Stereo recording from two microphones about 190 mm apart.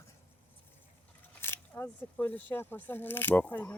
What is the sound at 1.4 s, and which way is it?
Speech, 10° left (ahead or behind).